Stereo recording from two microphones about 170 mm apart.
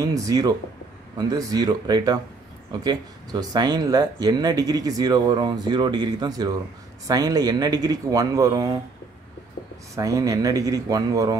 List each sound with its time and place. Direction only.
0.0 s speech: 20° right (ahead or behind)
9.9 s speech: 20° right (ahead or behind)